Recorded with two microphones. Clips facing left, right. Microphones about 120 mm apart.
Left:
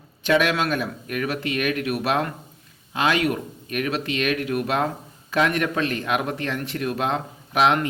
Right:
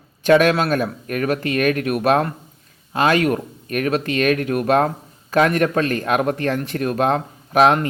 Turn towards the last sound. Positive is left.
turn(degrees=-45)  # may be behind; listen again after turning